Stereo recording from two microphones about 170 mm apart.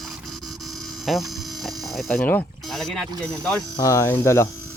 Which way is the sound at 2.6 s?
Centre (ahead or behind).